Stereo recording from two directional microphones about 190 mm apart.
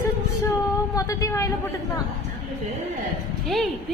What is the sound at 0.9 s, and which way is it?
Speech, 15° left (ahead or behind).